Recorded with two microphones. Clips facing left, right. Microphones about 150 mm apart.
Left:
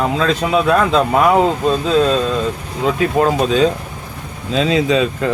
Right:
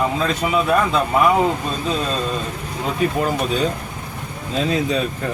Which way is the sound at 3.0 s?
90° left.